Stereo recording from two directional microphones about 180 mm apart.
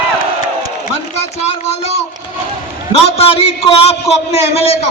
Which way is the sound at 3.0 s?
35° left (ahead or behind).